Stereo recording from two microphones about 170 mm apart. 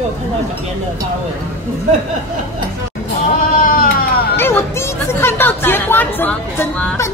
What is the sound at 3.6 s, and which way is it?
Sheep, 55° left (ahead or behind).